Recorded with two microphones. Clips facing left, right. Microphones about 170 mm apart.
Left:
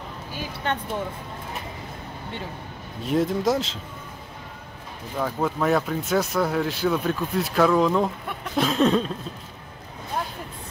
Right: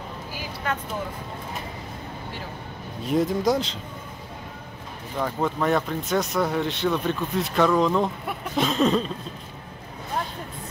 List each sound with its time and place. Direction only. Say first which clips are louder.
0.7 s speech: left 1 dB; 30° left (ahead or behind)
3.1 s speech: even; centre (ahead or behind)
5.1 s speech: even; centre (ahead or behind)